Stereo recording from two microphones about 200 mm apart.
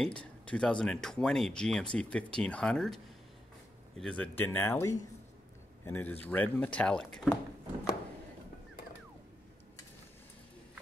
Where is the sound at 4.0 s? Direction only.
5° left (ahead or behind).